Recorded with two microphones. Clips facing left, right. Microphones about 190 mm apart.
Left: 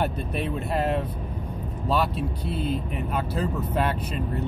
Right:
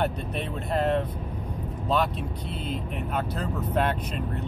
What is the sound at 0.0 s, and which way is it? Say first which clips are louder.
Vehicle: left 1 dB; 10° left (ahead or behind).